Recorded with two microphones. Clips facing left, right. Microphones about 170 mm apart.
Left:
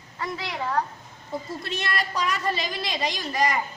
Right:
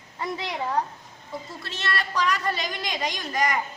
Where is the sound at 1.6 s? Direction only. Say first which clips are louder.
Right 2 dB; 15° left (ahead or behind).